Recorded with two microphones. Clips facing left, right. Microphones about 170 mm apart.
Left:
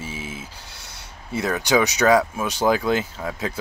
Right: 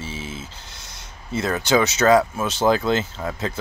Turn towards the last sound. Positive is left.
turn(degrees=10)  # may be behind; listen again after turning